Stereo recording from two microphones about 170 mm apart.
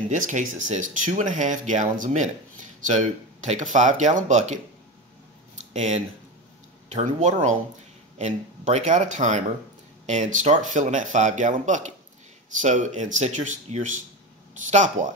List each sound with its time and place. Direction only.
0.1 s speech: 45° right (ahead or behind)
5.7 s speech: 45° right (ahead or behind)